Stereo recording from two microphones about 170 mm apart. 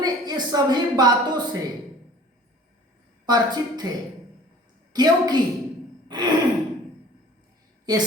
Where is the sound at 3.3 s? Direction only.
25° right (ahead or behind).